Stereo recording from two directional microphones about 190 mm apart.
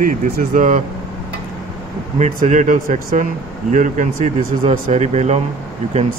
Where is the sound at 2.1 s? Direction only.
40° right (ahead or behind).